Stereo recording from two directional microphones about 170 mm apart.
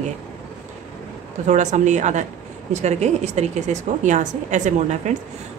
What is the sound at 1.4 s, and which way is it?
A woman's voice, 45° right (ahead or behind).